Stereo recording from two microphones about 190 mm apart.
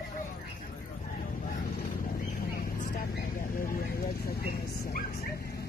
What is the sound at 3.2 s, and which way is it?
Vehicle, 50° left (ahead or behind).